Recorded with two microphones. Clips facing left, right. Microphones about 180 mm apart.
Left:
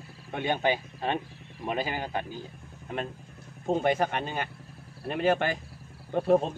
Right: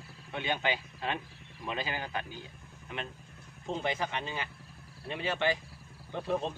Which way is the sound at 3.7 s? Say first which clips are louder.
Left 8 dB; 50° left (ahead or behind).